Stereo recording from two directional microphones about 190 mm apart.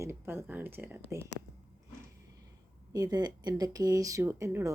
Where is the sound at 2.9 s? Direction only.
20° right (ahead or behind).